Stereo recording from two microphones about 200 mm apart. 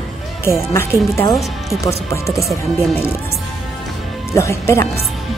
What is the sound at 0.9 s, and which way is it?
Speech, 15° right (ahead or behind).